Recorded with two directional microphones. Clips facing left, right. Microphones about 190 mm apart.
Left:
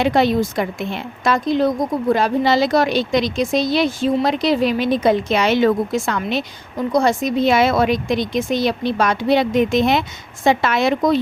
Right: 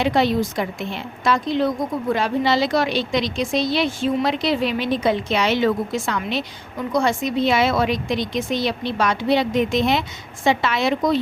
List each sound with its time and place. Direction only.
0.0 s a woman's voice: 50° left (ahead or behind)